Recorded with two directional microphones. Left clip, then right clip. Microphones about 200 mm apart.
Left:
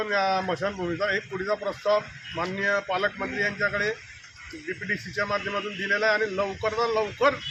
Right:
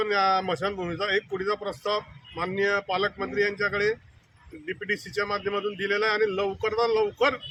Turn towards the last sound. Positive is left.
turn(degrees=-25)  # may be behind; listen again after turning